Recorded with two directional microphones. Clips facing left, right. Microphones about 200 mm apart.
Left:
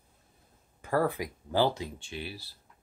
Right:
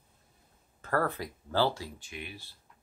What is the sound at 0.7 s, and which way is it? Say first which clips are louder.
Speech: left 2 dB; 10° left (ahead or behind).